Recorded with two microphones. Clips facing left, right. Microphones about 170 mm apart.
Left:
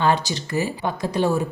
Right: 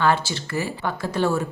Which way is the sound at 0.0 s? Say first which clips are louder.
Left 1 dB; 20° left (ahead or behind).